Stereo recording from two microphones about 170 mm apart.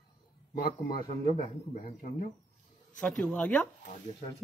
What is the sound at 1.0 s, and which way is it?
Speech, 30° left (ahead or behind).